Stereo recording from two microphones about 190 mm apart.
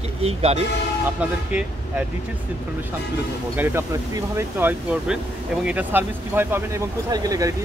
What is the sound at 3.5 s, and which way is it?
Speech, 10° right (ahead or behind).